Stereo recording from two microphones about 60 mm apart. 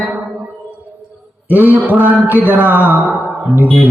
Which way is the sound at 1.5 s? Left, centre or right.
Right.